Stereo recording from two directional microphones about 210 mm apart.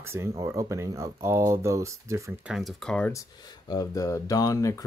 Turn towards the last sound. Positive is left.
turn(degrees=15)  # may be behind; listen again after turning